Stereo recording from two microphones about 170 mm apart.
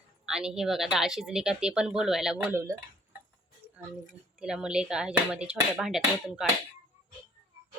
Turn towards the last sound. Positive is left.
turn(degrees=0)  # may be behind; listen again after turning